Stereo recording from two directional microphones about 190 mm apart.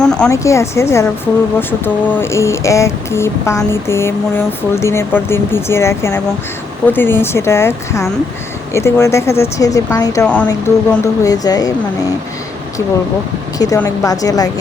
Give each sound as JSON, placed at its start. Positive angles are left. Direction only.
{"t": 0.0, "sound": "speech", "side_deg": 5}
{"t": 0.3, "sound": "speech", "side_deg": 15}
{"t": 10.2, "sound": "speech", "side_deg": 5}
{"t": 13.8, "sound": "speech", "side_deg": 20}